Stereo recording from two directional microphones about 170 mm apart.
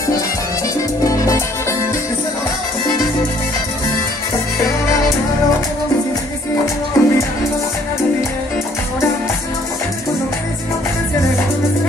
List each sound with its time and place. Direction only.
1.0 s music: 20° left (ahead or behind)
7.0 s music: 20° left (ahead or behind)